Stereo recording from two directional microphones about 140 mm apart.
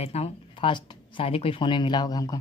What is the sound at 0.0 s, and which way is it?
Speech, 50° left (ahead or behind).